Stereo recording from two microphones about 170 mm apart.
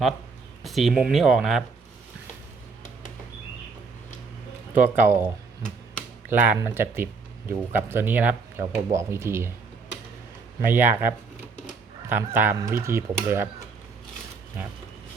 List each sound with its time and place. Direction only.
0.6 s speech: centre (ahead or behind)
4.8 s speech: 15° right (ahead or behind)
10.7 s speech: 10° right (ahead or behind)